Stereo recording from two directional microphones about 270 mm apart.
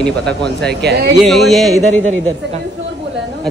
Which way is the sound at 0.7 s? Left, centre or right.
Right.